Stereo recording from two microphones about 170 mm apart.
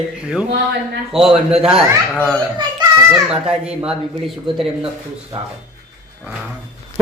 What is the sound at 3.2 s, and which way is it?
Music, 5° right (ahead or behind).